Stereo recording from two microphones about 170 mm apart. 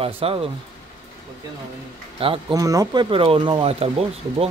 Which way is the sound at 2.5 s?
20° right (ahead or behind).